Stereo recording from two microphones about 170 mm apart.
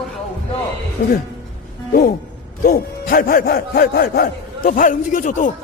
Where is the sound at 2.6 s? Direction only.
60° left (ahead or behind).